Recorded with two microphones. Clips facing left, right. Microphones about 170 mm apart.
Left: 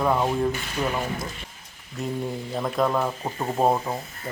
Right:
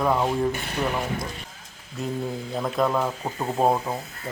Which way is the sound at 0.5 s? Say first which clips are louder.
Right 1 dB; 60° right (ahead or behind).